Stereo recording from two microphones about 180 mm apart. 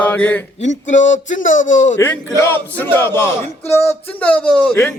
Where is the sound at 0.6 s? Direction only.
45° left (ahead or behind).